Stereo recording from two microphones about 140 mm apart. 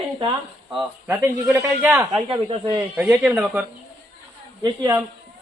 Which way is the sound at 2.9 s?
15° right (ahead or behind).